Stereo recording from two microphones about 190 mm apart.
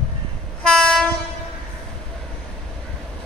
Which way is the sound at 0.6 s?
5° left (ahead or behind).